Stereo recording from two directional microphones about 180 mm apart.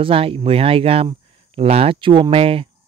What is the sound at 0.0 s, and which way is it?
Speech, 30° right (ahead or behind).